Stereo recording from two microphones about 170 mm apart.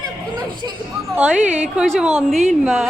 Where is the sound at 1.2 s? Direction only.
10° right (ahead or behind).